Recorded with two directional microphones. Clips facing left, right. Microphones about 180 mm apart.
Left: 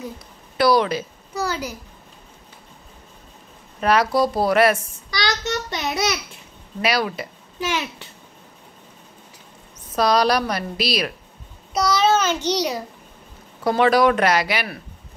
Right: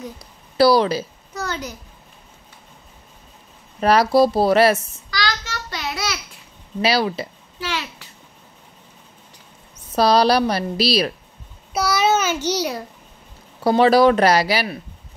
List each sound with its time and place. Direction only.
0.6 s a woman's voice: 30° right (ahead or behind)
1.3 s a child's voice: 10° left (ahead or behind)
3.8 s speech: 35° right (ahead or behind)
5.2 s child singing: 20° left (ahead or behind)
6.8 s speech: 30° right (ahead or behind)
7.6 s a child's voice: 20° left (ahead or behind)
9.9 s a woman's voice: 30° right (ahead or behind)
11.7 s a child's voice: 10° right (ahead or behind)
13.7 s a woman's voice: 30° right (ahead or behind)